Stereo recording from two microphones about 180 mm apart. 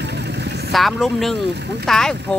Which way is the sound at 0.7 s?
Centre (ahead or behind).